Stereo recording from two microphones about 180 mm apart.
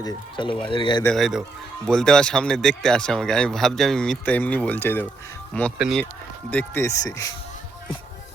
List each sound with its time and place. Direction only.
0.0 s speech: 25° left (ahead or behind)
1.0 s speech: centre (ahead or behind)
5.7 s speech: 5° right (ahead or behind)
6.5 s speech: 10° left (ahead or behind)